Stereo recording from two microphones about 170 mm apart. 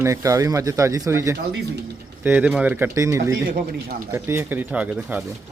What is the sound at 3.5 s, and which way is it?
Speech, 60° right (ahead or behind).